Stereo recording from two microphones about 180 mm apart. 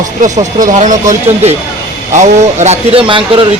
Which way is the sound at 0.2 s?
45° right (ahead or behind).